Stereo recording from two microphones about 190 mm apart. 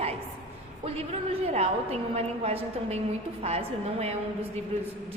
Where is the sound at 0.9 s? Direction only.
30° right (ahead or behind).